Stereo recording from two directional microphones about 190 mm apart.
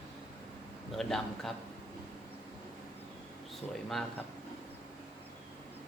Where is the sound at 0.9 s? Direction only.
Centre (ahead or behind).